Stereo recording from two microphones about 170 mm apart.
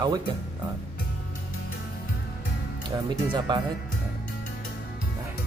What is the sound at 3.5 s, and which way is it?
Speech, 25° right (ahead or behind).